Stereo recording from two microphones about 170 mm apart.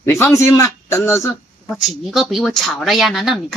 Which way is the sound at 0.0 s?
15° left (ahead or behind).